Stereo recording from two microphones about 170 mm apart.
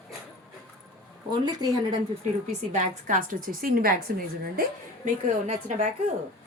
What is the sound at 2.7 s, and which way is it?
A woman's voice, 45° right (ahead or behind).